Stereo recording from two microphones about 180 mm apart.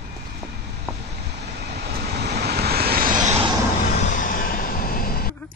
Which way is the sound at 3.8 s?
45° left (ahead or behind).